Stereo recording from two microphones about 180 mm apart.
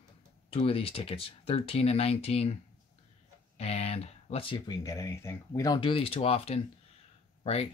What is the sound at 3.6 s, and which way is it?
Speech, 35° left (ahead or behind).